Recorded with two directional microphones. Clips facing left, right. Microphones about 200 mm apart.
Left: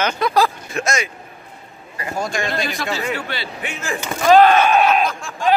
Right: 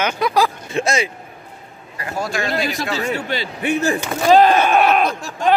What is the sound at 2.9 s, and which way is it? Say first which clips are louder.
Speech: right 3 dB; 40° right (ahead or behind).